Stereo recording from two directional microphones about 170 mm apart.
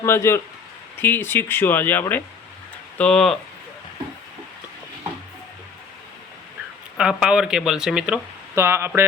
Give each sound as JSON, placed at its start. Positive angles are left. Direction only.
{"t": 0.0, "sound": "speech", "side_deg": 15}
{"t": 6.9, "sound": "speech", "side_deg": -5}